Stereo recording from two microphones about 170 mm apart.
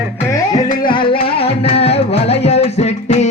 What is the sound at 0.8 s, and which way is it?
Music, 30° left (ahead or behind).